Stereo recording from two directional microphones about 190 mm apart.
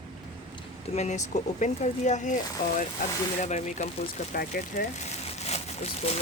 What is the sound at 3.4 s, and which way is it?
Speech, 40° left (ahead or behind).